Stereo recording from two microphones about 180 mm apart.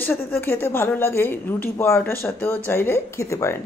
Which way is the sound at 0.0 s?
10° left (ahead or behind).